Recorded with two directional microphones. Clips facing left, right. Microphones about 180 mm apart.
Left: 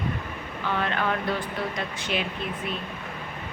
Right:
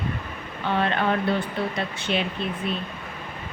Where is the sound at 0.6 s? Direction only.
30° right (ahead or behind).